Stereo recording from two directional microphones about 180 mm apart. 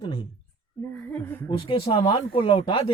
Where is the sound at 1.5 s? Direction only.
30° left (ahead or behind).